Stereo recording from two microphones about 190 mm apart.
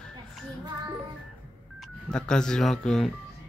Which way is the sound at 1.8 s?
5° left (ahead or behind).